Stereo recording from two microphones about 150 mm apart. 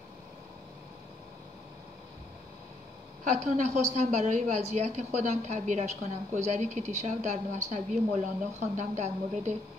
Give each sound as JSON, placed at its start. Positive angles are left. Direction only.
{"t": 3.3, "sound": "a woman's voice", "side_deg": -50}